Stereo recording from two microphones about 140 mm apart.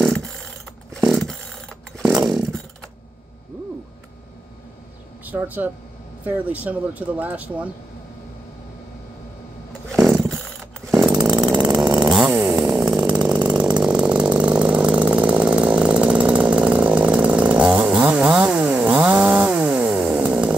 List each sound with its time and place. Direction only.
0.0 s a sound: 5° left (ahead or behind)
2.2 s chainsaw: centre (ahead or behind)
5.2 s speech: 10° right (ahead or behind)
9.9 s a sound: centre (ahead or behind)
11.2 s chainsaw: 30° right (ahead or behind)
12.3 s chainsaw: 20° right (ahead or behind)
13.6 s chainsaw: 10° right (ahead or behind)